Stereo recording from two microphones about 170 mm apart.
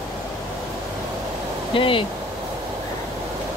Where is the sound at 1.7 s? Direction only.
30° left (ahead or behind).